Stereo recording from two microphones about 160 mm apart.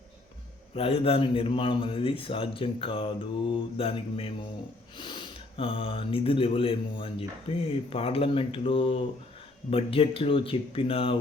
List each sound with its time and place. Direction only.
0.8 s speech: 35° left (ahead or behind)